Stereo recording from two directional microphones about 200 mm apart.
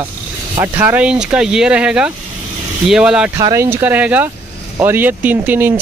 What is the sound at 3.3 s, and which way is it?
Speech, 15° right (ahead or behind).